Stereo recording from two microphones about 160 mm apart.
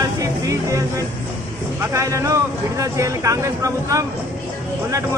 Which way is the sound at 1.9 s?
20° right (ahead or behind).